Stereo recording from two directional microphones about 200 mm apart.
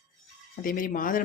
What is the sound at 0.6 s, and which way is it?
Speech, 45° left (ahead or behind).